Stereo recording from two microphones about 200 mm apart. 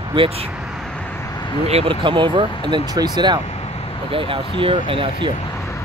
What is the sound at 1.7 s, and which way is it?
Speech, 30° right (ahead or behind).